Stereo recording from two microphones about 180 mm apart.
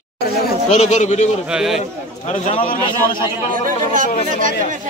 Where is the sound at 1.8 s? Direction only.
40° left (ahead or behind).